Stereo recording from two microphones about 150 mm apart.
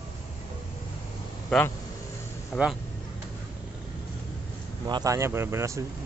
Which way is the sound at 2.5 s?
5° left (ahead or behind).